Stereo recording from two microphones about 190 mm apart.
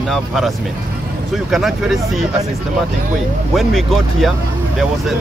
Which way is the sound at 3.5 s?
Centre (ahead or behind).